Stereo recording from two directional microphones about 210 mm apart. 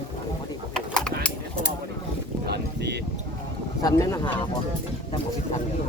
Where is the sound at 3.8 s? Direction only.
15° left (ahead or behind).